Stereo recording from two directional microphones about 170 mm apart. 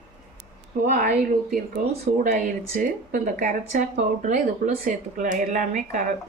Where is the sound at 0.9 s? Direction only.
55° right (ahead or behind).